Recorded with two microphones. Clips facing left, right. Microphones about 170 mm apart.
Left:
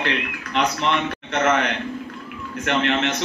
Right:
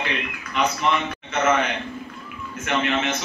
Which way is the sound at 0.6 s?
75° left (ahead or behind).